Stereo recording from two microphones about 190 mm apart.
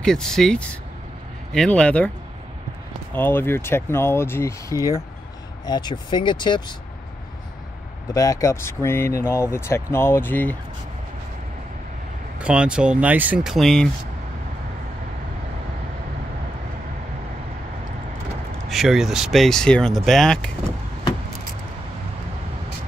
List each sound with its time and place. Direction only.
0.0 s speech: 5° left (ahead or behind)
3.1 s speech: 10° left (ahead or behind)
8.1 s speech: 15° left (ahead or behind)
12.4 s speech: 5° right (ahead or behind)
18.7 s speech: centre (ahead or behind)